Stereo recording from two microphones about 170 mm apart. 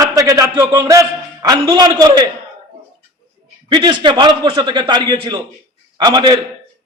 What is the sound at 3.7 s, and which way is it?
A man's voice, 25° right (ahead or behind).